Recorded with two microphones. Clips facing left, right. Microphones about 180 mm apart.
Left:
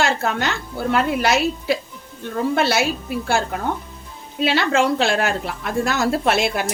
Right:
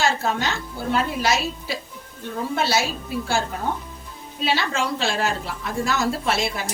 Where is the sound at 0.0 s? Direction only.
60° left (ahead or behind).